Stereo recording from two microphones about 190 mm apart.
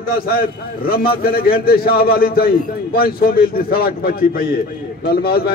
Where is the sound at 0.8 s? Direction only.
55° left (ahead or behind).